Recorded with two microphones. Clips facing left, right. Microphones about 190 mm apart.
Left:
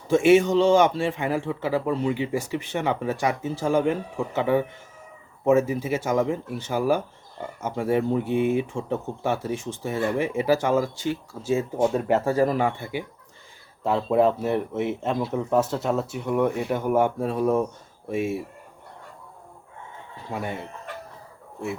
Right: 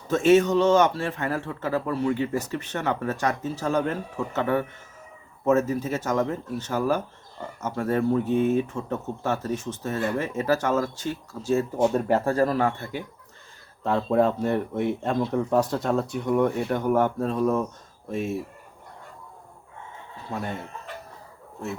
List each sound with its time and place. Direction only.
0.1 s speech: 15° left (ahead or behind)
20.3 s speech: 10° left (ahead or behind)